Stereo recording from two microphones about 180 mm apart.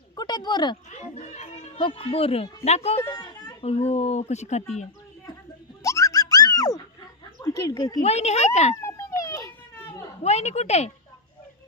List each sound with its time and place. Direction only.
0.2 s speech: 25° left (ahead or behind)
0.9 s a child's voice: 40° left (ahead or behind)
3.0 s a sound: 20° left (ahead or behind)
3.6 s speech: 35° left (ahead or behind)
5.8 s a sound: 15° left (ahead or behind)
7.4 s speech: 20° left (ahead or behind)
8.0 s speech: 35° left (ahead or behind)
8.7 s children playing: 15° left (ahead or behind)
10.2 s speech: 35° left (ahead or behind)